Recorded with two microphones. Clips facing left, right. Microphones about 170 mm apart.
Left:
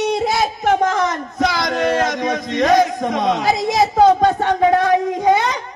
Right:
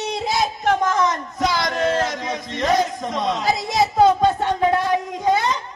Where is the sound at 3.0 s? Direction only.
55° left (ahead or behind).